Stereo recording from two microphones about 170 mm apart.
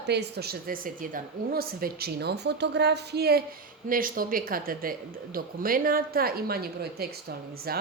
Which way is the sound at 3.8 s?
55° right (ahead or behind).